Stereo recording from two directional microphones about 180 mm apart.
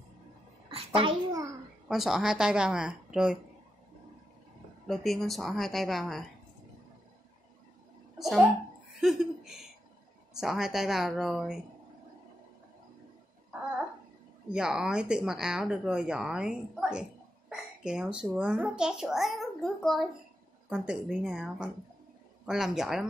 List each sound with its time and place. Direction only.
0.7 s a child's voice: 30° right (ahead or behind)
1.9 s a child's voice: centre (ahead or behind)
4.8 s a child's voice: centre (ahead or behind)
8.2 s a child's voice: centre (ahead or behind)
14.5 s a child's voice: 5° right (ahead or behind)